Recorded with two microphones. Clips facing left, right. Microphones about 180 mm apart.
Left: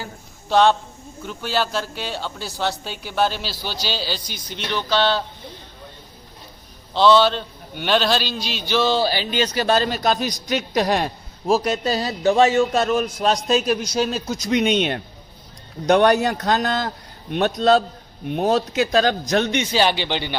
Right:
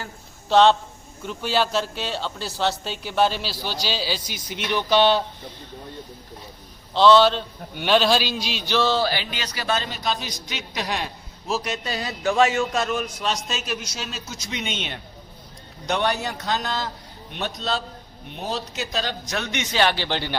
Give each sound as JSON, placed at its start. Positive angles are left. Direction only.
{"t": 0.4, "sound": "speech", "side_deg": 10}
{"t": 6.9, "sound": "speech", "side_deg": 5}
{"t": 9.0, "sound": "a man's voice", "side_deg": 30}
{"t": 19.7, "sound": "speech", "side_deg": 25}
{"t": 20.1, "sound": "speech", "side_deg": 15}